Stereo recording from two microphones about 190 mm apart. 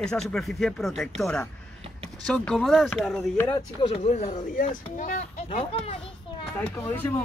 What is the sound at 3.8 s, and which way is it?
Speech, 30° left (ahead or behind).